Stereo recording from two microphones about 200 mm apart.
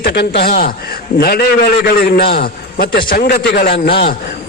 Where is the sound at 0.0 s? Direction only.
55° left (ahead or behind).